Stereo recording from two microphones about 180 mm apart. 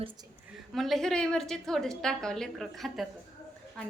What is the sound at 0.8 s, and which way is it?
A woman's voice, centre (ahead or behind).